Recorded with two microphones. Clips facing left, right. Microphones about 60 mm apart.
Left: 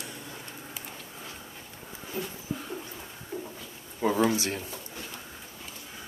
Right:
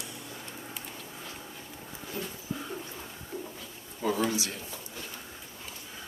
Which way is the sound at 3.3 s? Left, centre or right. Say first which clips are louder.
Left 2 dB; centre.